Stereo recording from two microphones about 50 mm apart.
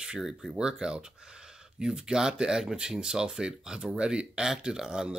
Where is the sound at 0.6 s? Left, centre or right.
Centre.